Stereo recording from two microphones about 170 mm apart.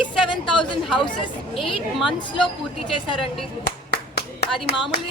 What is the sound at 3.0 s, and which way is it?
Speech, 30° left (ahead or behind).